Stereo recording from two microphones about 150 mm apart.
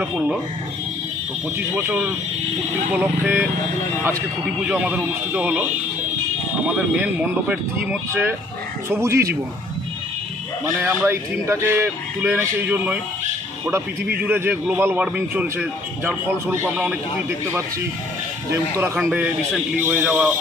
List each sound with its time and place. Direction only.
0.0 s a man's voice: 10° right (ahead or behind)
1.5 s a man's voice: 10° right (ahead or behind)
4.7 s a man's voice: 10° right (ahead or behind)
6.7 s a man's voice: 10° right (ahead or behind)
10.8 s a man's voice: 15° right (ahead or behind)
14.2 s a man's voice: 15° right (ahead or behind)
18.8 s a man's voice: 10° right (ahead or behind)